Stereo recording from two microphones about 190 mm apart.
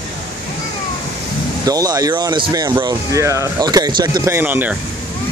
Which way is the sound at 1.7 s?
20° right (ahead or behind).